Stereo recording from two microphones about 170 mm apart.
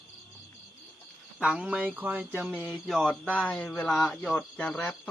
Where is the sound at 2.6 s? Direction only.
Centre (ahead or behind).